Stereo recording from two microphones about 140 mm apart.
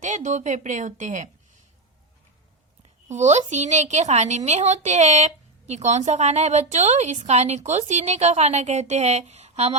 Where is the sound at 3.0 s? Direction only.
60° right (ahead or behind).